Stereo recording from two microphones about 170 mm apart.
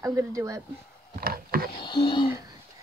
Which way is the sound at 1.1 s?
60° right (ahead or behind).